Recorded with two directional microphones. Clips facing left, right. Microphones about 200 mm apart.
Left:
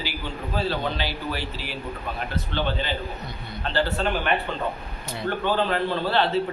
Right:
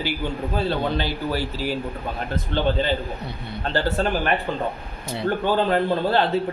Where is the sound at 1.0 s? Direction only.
45° right (ahead or behind).